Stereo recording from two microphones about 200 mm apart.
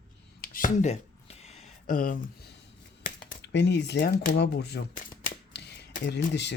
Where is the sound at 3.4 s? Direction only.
60° left (ahead or behind); by 4.4 s 40° left (ahead or behind).